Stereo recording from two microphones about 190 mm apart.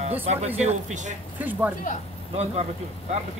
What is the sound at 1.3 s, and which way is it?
Speech, 10° right (ahead or behind).